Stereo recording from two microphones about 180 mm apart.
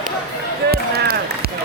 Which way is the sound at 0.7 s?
60° right (ahead or behind).